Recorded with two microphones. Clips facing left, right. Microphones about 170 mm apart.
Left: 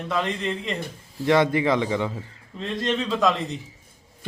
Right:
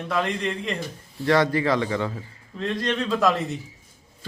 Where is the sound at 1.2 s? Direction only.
20° left (ahead or behind).